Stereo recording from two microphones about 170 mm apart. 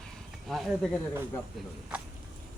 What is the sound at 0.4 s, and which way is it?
Speech, centre (ahead or behind).